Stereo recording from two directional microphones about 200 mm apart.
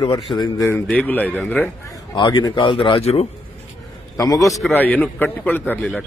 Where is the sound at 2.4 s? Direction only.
25° left (ahead or behind).